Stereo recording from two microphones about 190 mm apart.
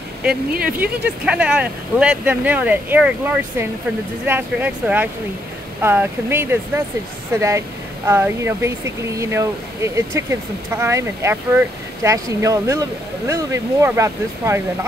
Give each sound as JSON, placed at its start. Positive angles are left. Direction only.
{"t": 0.5, "sound": "speech", "side_deg": -50}
{"t": 0.7, "sound": "speech", "side_deg": -5}